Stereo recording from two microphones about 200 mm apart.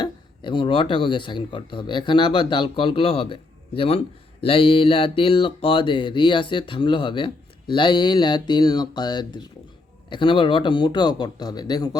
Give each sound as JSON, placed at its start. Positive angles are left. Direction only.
{"t": 0.0, "sound": "speech", "side_deg": 25}